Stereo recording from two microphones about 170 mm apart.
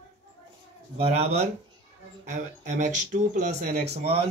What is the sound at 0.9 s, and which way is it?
Speech, 40° right (ahead or behind).